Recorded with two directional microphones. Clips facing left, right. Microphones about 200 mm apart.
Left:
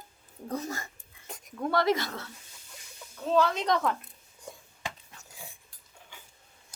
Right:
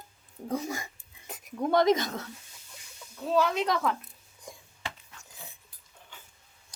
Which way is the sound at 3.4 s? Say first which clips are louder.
Even; 5° right (ahead or behind).